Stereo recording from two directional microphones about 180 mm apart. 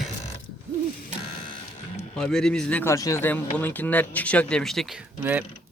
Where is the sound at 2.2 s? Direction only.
5° left (ahead or behind).